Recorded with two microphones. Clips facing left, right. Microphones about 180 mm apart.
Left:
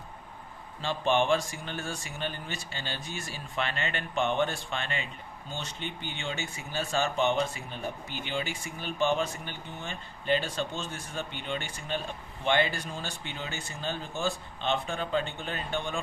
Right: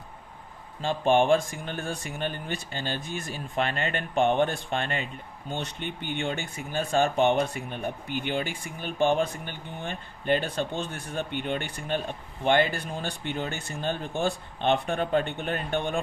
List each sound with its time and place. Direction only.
0.8 s speech: 50° right (ahead or behind)